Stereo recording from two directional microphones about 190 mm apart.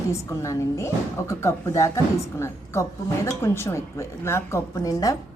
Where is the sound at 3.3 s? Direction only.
15° left (ahead or behind).